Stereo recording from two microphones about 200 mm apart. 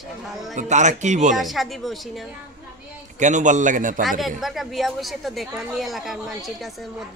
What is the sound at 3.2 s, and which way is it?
Speech, 40° right (ahead or behind).